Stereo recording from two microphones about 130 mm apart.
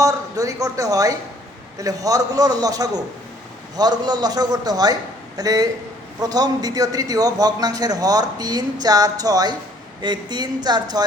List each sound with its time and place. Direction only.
0.0 s a man's voice: 25° right (ahead or behind)